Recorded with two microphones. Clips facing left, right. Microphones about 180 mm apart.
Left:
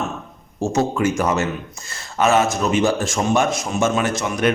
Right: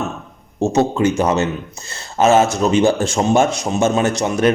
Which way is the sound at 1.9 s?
35° right (ahead or behind).